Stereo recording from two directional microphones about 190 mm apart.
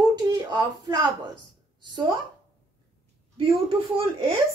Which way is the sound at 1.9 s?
20° right (ahead or behind).